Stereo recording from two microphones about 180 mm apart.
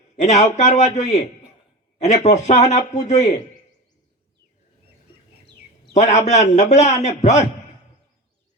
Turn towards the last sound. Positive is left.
turn(degrees=40)  # may be behind; listen again after turning